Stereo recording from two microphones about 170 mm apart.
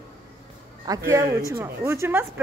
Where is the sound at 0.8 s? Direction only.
20° right (ahead or behind).